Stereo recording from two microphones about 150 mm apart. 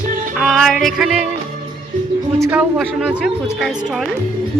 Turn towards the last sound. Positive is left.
turn(degrees=-5)  # may be behind; listen again after turning